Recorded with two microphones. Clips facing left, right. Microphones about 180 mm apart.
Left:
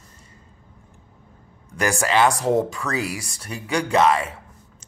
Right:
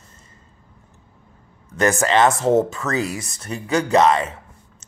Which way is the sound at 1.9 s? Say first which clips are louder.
Even; 5° left (ahead or behind).